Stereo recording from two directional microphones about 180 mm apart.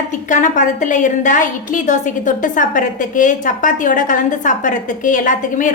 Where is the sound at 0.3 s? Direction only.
45° left (ahead or behind).